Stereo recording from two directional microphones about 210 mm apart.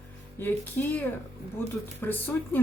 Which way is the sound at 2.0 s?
10° left (ahead or behind).